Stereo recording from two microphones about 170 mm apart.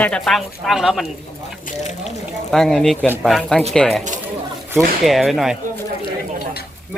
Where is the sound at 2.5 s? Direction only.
Centre (ahead or behind).